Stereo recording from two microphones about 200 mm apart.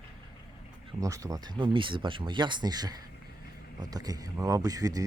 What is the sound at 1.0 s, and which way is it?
Speech, 15° right (ahead or behind).